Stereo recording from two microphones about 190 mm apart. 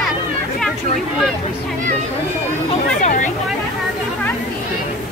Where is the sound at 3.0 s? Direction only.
45° left (ahead or behind).